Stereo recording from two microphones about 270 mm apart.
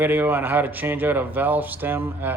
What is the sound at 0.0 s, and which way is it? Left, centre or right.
Speech, centre.